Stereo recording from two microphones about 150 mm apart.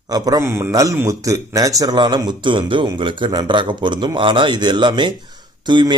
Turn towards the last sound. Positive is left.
turn(degrees=-30)  # may be behind; listen again after turning